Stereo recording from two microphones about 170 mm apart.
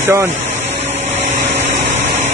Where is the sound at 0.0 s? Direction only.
15° right (ahead or behind).